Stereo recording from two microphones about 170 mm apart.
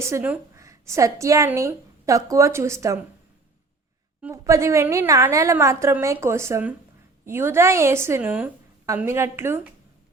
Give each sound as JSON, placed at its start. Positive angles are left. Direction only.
{"t": 0.0, "sound": "a woman's voice", "side_deg": -15}
{"t": 4.2, "sound": "a woman's voice", "side_deg": -15}